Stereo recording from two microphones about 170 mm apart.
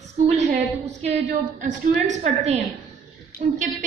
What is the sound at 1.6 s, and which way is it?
Speech, 45° right (ahead or behind).